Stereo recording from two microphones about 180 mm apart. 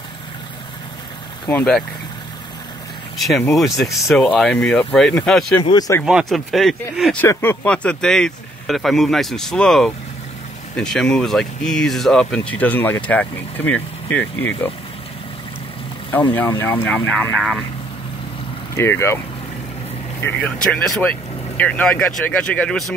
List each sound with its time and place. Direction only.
1.5 s speech: 5° left (ahead or behind)
3.2 s speech: centre (ahead or behind)
5.6 s speech: 25° left (ahead or behind)
6.0 s speech: centre (ahead or behind)
16.3 s speech: 15° left (ahead or behind)
18.8 s speech: 15° left (ahead or behind)
20.2 s speech: 10° left (ahead or behind)